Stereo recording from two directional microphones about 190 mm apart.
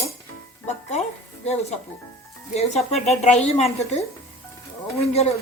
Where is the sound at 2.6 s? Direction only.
35° left (ahead or behind).